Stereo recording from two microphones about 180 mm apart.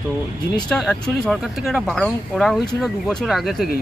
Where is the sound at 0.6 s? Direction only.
5° left (ahead or behind).